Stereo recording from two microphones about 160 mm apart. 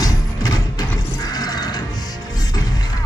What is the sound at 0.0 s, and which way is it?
Music, 25° left (ahead or behind).